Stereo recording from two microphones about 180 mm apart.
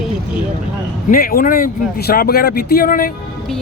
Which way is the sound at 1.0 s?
55° left (ahead or behind).